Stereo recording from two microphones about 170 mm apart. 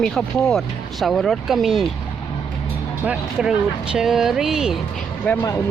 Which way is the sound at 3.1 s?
5° right (ahead or behind).